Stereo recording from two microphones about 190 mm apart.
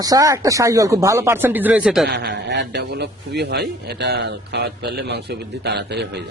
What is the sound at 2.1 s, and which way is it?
A man's voice, 60° right (ahead or behind).